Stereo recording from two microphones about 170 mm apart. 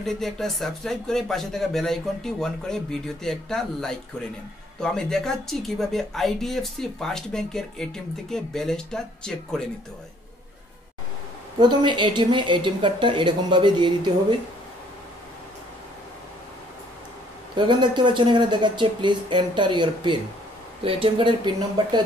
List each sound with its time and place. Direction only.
0.0 s speech: centre (ahead or behind)
11.6 s speech: 25° right (ahead or behind)
17.6 s speech: 25° right (ahead or behind)